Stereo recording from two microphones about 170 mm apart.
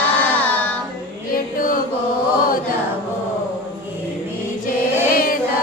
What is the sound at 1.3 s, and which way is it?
Chant, 55° left (ahead or behind).